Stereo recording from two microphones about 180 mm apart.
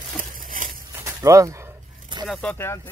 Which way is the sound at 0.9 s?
15° right (ahead or behind).